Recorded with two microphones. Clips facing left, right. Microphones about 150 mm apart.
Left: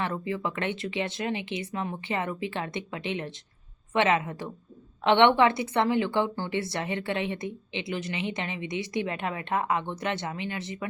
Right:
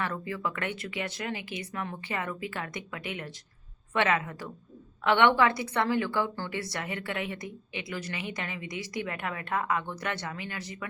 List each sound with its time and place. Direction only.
0.0 s a woman's voice: 20° left (ahead or behind)